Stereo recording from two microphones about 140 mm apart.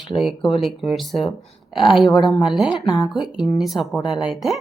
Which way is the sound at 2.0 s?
35° left (ahead or behind).